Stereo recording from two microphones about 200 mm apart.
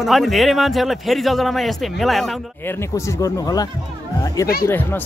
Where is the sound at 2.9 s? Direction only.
15° left (ahead or behind).